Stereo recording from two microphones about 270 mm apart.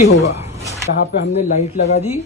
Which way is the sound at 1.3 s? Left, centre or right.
Left.